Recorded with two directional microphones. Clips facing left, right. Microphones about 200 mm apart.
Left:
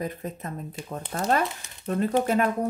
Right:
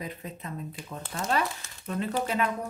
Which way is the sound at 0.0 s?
45° left (ahead or behind).